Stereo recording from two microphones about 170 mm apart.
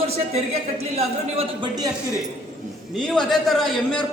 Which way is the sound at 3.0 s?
Centre (ahead or behind).